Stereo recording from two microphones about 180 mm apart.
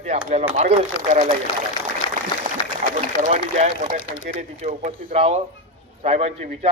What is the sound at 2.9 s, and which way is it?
A man's voice, 45° right (ahead or behind).